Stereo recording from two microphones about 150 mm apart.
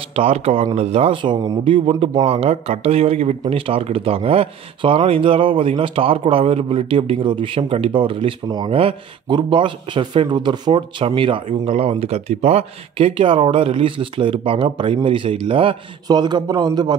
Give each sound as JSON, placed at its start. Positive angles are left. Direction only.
{"t": 0.1, "sound": "a man's voice", "side_deg": -40}